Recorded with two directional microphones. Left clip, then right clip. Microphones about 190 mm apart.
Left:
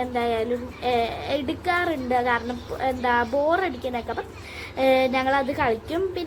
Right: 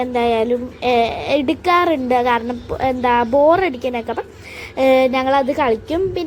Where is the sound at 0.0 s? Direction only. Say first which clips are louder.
Right 8 dB; 30° right (ahead or behind).